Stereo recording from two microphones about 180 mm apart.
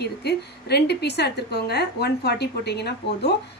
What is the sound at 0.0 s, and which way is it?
A woman's voice, 65° left (ahead or behind).